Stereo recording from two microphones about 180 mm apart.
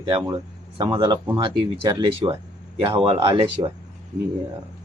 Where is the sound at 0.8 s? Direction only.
25° right (ahead or behind).